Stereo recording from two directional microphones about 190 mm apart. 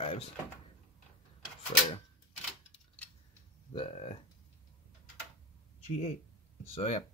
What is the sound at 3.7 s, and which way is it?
Speech, 30° left (ahead or behind).